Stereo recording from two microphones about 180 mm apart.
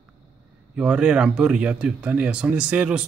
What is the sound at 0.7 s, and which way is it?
Speech, 5° right (ahead or behind).